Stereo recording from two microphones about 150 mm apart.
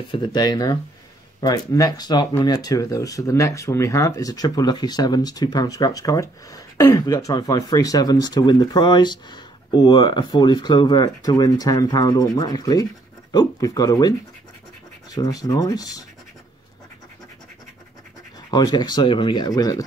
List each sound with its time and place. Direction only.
0.1 s speech: 30° left (ahead or behind)
18.5 s speech: 25° left (ahead or behind)